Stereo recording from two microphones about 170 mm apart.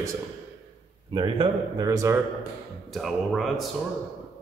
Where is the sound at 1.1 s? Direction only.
30° right (ahead or behind).